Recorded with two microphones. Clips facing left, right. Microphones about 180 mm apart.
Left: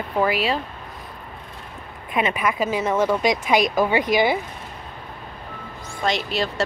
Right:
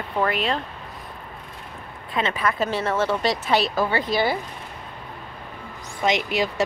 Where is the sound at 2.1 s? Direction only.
15° left (ahead or behind).